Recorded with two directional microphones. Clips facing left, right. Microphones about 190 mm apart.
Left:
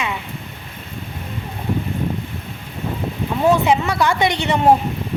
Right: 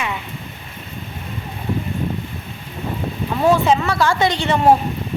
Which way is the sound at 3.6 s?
15° left (ahead or behind).